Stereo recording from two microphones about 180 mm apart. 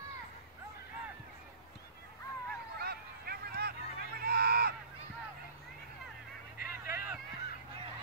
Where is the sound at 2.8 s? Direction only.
60° right (ahead or behind).